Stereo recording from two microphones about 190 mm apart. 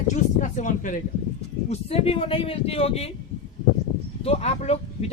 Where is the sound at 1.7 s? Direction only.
30° left (ahead or behind).